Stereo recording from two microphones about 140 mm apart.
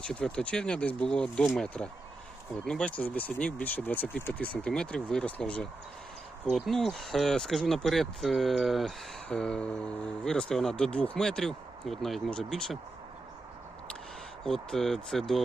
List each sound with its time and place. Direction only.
0.0 s speech: 5° left (ahead or behind)
14.4 s speech: 5° left (ahead or behind)